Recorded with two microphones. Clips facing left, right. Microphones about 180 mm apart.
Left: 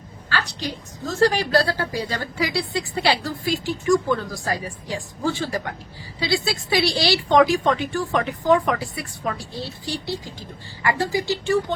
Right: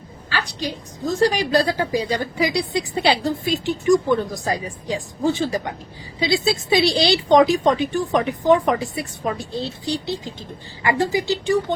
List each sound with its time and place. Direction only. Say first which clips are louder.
0.3 s a woman's voice: right 1 dB; 15° right (ahead or behind)